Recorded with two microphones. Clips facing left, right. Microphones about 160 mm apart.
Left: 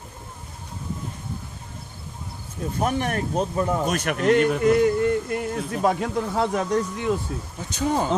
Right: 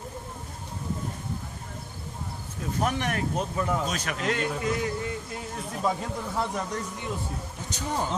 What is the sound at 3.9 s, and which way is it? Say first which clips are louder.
Speech: left 9 dB; 60° left (ahead or behind).